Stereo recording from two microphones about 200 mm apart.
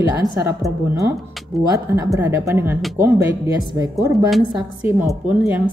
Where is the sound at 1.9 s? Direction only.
15° right (ahead or behind).